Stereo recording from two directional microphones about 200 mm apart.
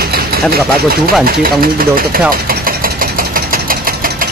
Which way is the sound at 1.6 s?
45° right (ahead or behind).